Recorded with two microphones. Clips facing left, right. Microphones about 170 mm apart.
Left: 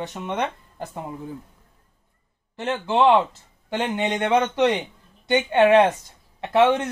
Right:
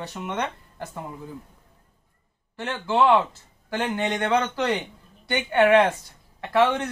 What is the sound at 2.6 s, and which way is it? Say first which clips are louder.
Speech: left 2 dB; 20° left (ahead or behind).